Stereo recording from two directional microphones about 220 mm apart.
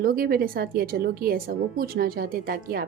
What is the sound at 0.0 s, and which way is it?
Speech, 40° right (ahead or behind).